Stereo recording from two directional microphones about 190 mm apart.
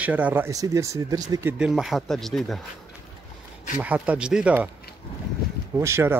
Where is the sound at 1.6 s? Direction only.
Centre (ahead or behind).